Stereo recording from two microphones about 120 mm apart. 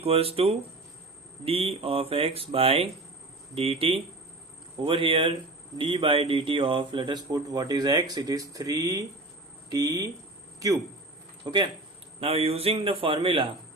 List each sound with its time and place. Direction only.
0.0 s speech: 55° right (ahead or behind); by 10.1 s 30° right (ahead or behind)
11.4 s speech: 35° right (ahead or behind)
12.2 s speech: 55° right (ahead or behind)